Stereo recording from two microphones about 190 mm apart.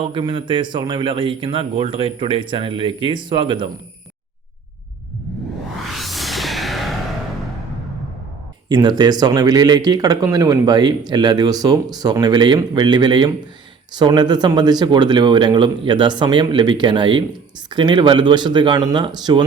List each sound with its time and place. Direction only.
0.0 s speech: 25° right (ahead or behind)
5.9 s music: centre (ahead or behind)
8.7 s speech: 20° right (ahead or behind)